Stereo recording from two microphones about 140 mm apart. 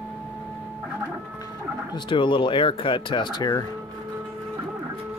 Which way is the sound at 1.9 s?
35° left (ahead or behind).